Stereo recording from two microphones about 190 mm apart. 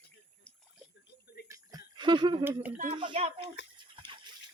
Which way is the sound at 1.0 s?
60° left (ahead or behind).